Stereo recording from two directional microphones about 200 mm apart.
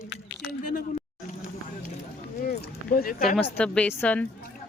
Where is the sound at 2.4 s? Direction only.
50° left (ahead or behind).